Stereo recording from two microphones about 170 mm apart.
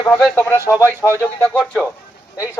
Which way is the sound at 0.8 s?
15° right (ahead or behind).